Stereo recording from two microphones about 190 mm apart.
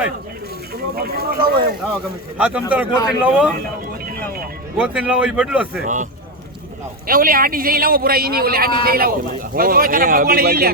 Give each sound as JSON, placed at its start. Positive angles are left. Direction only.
{"t": 0.9, "sound": "a man's voice", "side_deg": -55}
{"t": 2.4, "sound": "a man's voice", "side_deg": -5}
{"t": 4.8, "sound": "speech", "side_deg": -5}
{"t": 5.8, "sound": "speech", "side_deg": -40}
{"t": 7.1, "sound": "a man's voice", "side_deg": -50}